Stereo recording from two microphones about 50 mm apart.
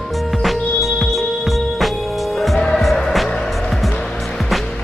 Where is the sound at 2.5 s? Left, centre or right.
Centre.